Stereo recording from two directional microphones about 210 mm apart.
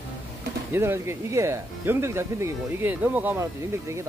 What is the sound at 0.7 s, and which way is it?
Speech, 10° right (ahead or behind).